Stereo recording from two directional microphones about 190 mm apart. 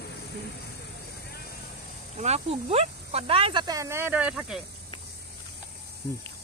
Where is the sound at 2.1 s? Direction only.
35° right (ahead or behind); by 4.6 s 5° right (ahead or behind).